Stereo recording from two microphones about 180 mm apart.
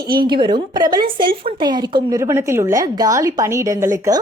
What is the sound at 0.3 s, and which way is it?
A woman's voice, 30° right (ahead or behind).